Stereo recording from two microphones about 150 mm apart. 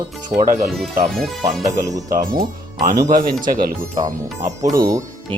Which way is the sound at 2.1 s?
70° right (ahead or behind).